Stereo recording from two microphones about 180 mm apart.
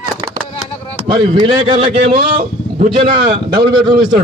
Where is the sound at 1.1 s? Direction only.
25° right (ahead or behind).